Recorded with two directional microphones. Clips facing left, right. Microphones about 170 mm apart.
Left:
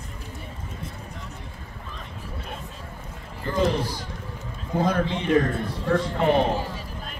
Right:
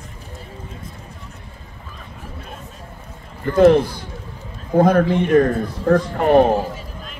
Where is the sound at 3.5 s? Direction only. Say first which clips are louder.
Right 12 dB; 55° right (ahead or behind).